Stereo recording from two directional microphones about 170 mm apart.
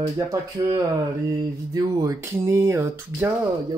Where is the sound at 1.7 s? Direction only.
20° right (ahead or behind).